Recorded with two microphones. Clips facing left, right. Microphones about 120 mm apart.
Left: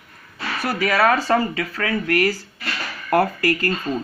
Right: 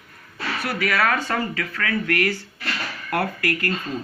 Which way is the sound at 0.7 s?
25° left (ahead or behind).